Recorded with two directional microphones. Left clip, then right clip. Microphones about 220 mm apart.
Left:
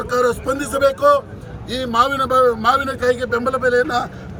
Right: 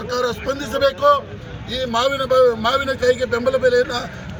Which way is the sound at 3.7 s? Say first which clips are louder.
Left 3 dB; 25° left (ahead or behind).